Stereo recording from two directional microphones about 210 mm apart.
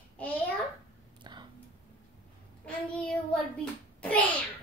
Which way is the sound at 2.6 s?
5° left (ahead or behind).